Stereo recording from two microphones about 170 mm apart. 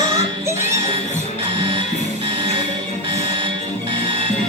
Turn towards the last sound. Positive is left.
turn(degrees=-30)  # may be behind; listen again after turning